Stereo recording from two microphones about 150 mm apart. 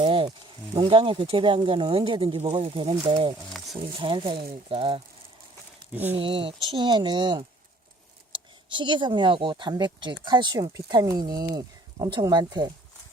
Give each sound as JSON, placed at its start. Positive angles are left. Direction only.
{"t": 0.0, "sound": "snake", "side_deg": -35}
{"t": 0.3, "sound": "speech", "side_deg": -25}
{"t": 0.9, "sound": "speech", "side_deg": -35}
{"t": 5.9, "sound": "speech", "side_deg": -10}
{"t": 6.1, "sound": "speech", "side_deg": -35}
{"t": 8.7, "sound": "speech", "side_deg": -35}